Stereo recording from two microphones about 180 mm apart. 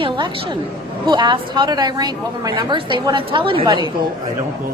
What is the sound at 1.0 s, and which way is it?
A woman's voice, 25° right (ahead or behind).